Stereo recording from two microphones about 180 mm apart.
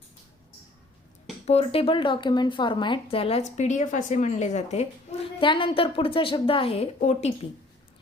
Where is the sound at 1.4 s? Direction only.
35° left (ahead or behind).